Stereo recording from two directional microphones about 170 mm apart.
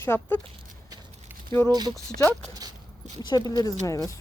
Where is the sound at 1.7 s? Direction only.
25° right (ahead or behind).